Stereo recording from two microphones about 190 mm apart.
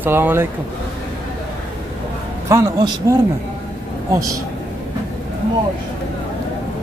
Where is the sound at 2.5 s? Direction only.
20° right (ahead or behind).